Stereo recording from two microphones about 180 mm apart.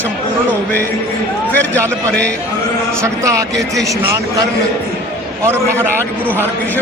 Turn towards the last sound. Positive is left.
turn(degrees=-15)  # may be behind; listen again after turning